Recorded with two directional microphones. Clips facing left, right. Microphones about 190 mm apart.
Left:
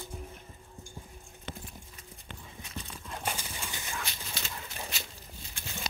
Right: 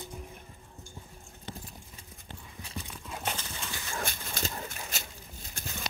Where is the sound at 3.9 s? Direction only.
50° right (ahead or behind).